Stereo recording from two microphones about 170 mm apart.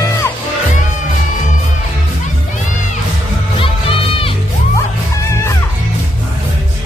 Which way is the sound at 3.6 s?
30° left (ahead or behind).